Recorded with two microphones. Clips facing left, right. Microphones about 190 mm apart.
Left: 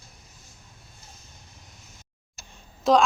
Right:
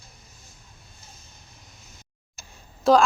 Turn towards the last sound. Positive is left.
turn(degrees=0)  # may be behind; listen again after turning